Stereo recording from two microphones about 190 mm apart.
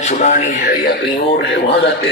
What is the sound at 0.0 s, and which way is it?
Speech, 40° left (ahead or behind).